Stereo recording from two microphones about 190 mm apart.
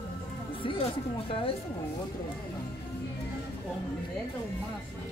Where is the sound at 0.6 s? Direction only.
30° left (ahead or behind).